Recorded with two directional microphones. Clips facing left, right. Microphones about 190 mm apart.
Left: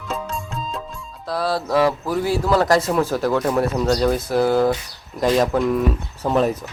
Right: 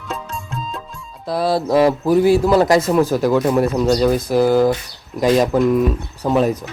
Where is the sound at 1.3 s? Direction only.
20° right (ahead or behind).